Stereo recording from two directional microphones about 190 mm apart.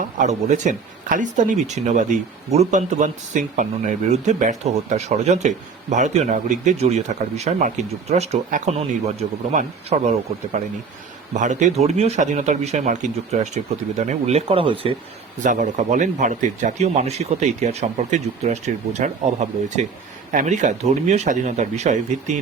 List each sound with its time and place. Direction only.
0.2 s speech: 40° right (ahead or behind)
11.3 s speech: 40° right (ahead or behind)
15.4 s speech: 40° right (ahead or behind)